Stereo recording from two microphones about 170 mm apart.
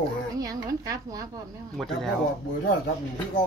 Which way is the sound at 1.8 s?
Centre (ahead or behind).